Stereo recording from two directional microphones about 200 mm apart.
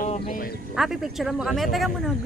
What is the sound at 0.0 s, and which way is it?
Music, 40° left (ahead or behind).